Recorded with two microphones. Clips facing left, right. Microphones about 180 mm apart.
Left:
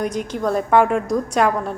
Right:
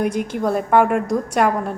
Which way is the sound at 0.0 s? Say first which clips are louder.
Right 2 dB; 55° right (ahead or behind).